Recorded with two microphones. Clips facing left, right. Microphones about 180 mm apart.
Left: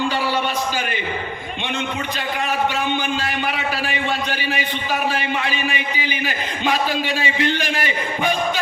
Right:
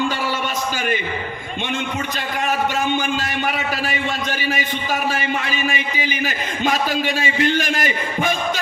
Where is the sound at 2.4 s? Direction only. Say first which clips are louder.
Right 2 dB; 45° right (ahead or behind).